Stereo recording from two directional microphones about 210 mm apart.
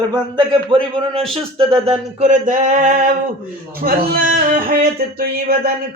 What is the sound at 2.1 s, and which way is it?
Male singing, 35° right (ahead or behind).